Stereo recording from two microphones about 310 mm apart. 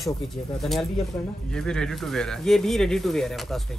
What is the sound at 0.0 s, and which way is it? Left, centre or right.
Speech, centre.